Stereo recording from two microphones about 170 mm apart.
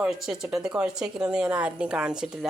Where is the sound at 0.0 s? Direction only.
5° right (ahead or behind).